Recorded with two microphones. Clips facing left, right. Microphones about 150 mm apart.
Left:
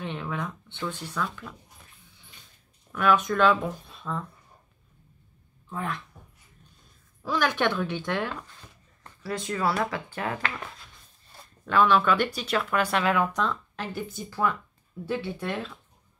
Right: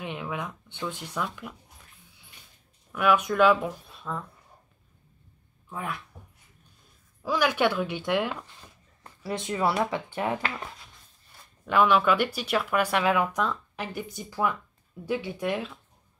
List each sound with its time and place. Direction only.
0.0 s speech: 10° right (ahead or behind)
2.9 s speech: 10° right (ahead or behind)
5.7 s speech: 10° right (ahead or behind)
7.2 s speech: 10° right (ahead or behind)
11.6 s speech: 10° right (ahead or behind)